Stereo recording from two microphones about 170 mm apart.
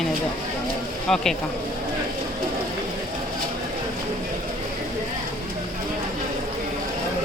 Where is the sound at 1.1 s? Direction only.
5° left (ahead or behind).